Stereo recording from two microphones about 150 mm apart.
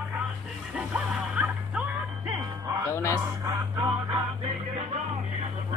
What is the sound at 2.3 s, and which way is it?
Music, 20° right (ahead or behind).